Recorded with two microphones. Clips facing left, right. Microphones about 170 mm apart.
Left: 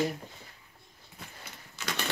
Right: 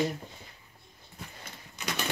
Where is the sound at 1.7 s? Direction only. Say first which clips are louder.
Right 1 dB; 15° right (ahead or behind).